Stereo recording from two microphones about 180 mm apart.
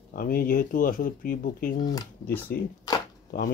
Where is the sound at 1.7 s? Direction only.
20° left (ahead or behind).